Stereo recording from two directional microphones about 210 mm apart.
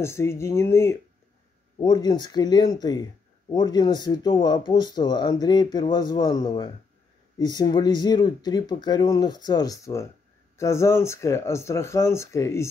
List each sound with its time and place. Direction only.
0.0 s speech: 10° left (ahead or behind)